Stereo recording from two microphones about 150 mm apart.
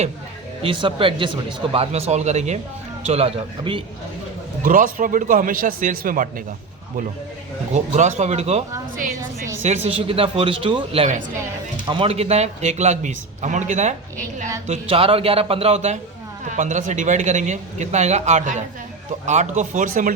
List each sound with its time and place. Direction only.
0.6 s speech: 35° right (ahead or behind)
4.6 s a man's voice: 65° right (ahead or behind)
7.7 s speech: 50° right (ahead or behind)
9.6 s speech: 40° right (ahead or behind)
14.7 s a man's voice: 40° right (ahead or behind); by 20.1 s 65° right (ahead or behind)